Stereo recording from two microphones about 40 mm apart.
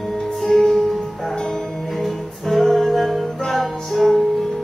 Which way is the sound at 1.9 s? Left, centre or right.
Centre.